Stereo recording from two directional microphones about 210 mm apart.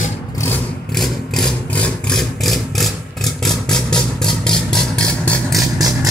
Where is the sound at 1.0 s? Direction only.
5° left (ahead or behind).